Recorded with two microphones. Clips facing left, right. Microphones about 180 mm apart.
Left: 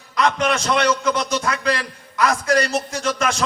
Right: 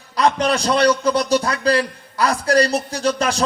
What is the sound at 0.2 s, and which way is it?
A man's voice, 35° right (ahead or behind).